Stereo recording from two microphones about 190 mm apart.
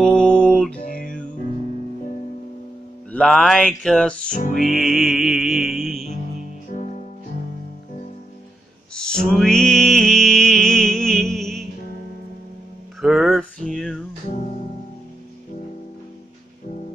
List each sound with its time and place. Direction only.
0.0 s music: 5° left (ahead or behind)
0.8 s music: 45° left (ahead or behind)
3.1 s music: 5° left (ahead or behind)
6.7 s music: 40° left (ahead or behind)
8.9 s music: 5° left (ahead or behind)
13.0 s a sound: centre (ahead or behind)
14.3 s music: 40° left (ahead or behind)